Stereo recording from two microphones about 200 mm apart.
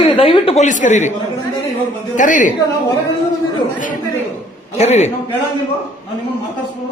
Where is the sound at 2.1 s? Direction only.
40° left (ahead or behind).